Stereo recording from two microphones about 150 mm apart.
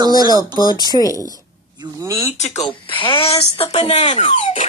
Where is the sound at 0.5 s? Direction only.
25° left (ahead or behind).